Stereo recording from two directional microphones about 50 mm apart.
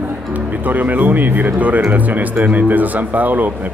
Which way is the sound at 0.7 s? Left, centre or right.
Right.